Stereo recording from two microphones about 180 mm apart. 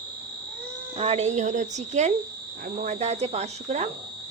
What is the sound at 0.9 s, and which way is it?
Speech, 35° right (ahead or behind).